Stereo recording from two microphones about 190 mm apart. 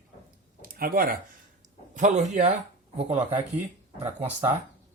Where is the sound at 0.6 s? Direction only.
50° right (ahead or behind).